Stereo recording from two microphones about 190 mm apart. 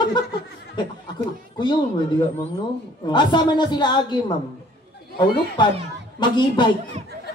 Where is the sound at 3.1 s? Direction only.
25° left (ahead or behind).